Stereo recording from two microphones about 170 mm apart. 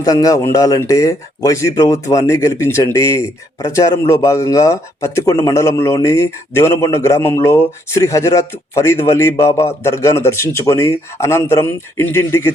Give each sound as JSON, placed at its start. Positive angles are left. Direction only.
{"t": 0.0, "sound": "speech", "side_deg": 20}